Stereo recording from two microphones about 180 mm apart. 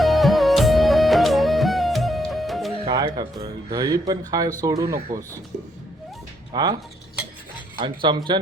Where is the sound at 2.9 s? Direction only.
20° right (ahead or behind).